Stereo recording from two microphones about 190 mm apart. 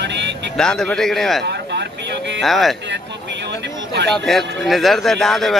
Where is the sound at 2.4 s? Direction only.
Centre (ahead or behind).